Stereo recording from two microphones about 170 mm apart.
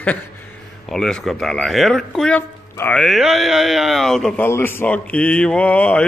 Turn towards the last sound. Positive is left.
turn(degrees=10)  # may be behind; listen again after turning